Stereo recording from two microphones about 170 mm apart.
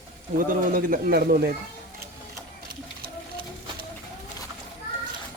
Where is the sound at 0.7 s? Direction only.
60° right (ahead or behind).